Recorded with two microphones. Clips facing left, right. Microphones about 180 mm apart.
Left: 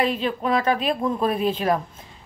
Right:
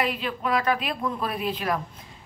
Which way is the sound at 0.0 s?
25° left (ahead or behind).